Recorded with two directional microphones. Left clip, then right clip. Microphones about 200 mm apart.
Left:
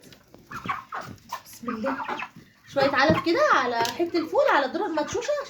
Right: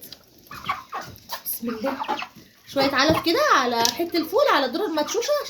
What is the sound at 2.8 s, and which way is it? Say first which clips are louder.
Speech: right 1 dB; 50° right (ahead or behind).